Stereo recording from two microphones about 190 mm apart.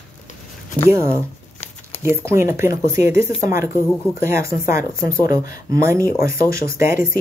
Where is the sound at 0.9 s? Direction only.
15° right (ahead or behind).